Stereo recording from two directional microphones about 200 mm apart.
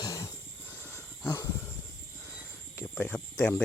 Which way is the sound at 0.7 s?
10° left (ahead or behind).